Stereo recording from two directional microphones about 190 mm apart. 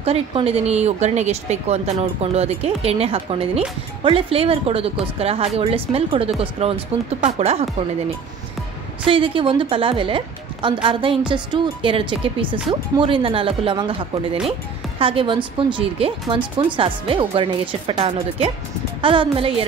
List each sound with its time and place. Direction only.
0.0 s speech: 30° right (ahead or behind)
9.0 s a woman's voice: 30° right (ahead or behind)